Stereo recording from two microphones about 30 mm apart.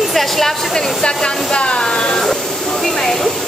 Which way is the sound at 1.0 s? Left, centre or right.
Left.